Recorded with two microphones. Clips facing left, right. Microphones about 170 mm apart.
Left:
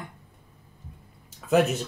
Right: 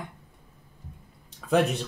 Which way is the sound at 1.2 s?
5° left (ahead or behind).